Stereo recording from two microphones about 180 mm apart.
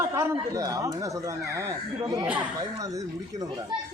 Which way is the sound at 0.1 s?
15° right (ahead or behind).